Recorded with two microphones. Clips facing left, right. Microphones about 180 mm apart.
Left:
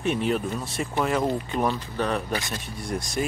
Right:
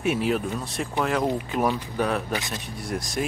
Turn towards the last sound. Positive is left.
turn(degrees=0)  # may be behind; listen again after turning